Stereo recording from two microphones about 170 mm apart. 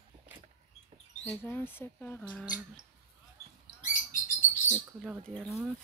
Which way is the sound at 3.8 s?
50° left (ahead or behind).